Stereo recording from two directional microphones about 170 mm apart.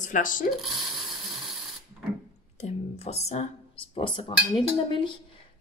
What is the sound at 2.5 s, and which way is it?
A woman's voice, 40° left (ahead or behind).